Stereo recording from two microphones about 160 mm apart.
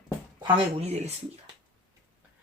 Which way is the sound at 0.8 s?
40° right (ahead or behind).